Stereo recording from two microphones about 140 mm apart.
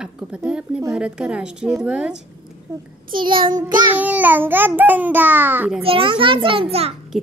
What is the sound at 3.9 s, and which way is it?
A woman's voice, 10° right (ahead or behind).